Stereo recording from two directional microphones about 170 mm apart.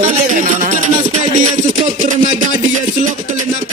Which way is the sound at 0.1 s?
50° right (ahead or behind).